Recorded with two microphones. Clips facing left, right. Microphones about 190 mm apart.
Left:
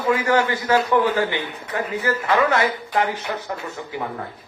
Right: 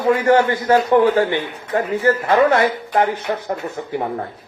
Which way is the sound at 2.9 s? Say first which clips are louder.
Right 5 dB; 45° right (ahead or behind).